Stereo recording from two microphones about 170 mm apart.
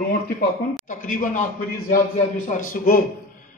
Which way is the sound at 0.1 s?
60° left (ahead or behind).